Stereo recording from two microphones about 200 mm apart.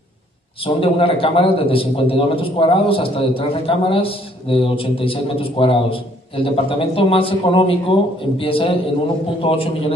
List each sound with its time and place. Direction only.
0.7 s a man's voice: 25° left (ahead or behind)